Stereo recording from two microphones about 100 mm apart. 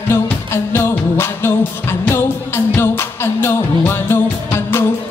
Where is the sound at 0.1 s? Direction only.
25° left (ahead or behind).